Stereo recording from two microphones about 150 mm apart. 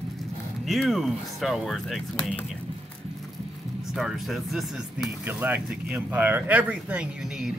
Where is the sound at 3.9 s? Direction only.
Centre (ahead or behind).